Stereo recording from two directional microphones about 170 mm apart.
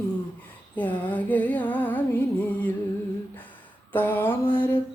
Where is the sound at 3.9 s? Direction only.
10° left (ahead or behind).